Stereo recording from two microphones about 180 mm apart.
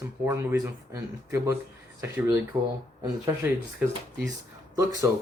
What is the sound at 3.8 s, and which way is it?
Speech, 5° right (ahead or behind).